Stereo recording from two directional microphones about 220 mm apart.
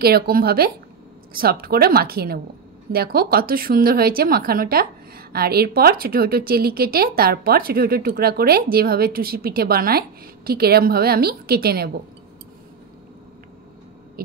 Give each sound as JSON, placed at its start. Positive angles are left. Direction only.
{"t": 0.0, "sound": "a woman's voice", "side_deg": -45}